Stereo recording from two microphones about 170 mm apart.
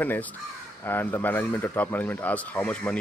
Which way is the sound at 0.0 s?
10° left (ahead or behind).